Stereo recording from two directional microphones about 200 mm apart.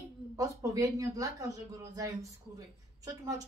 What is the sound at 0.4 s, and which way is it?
A woman's voice, 15° right (ahead or behind).